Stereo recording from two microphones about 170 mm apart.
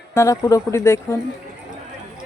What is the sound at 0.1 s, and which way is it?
Speech, 15° left (ahead or behind).